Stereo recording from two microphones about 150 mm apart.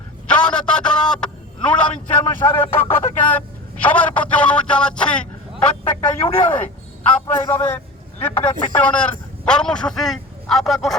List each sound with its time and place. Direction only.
0.3 s a sound: 5° left (ahead or behind)
2.9 s speech: 10° left (ahead or behind)
5.5 s a man's voice: 35° left (ahead or behind)
7.3 s speech: 15° left (ahead or behind)
8.8 s speech: 10° left (ahead or behind)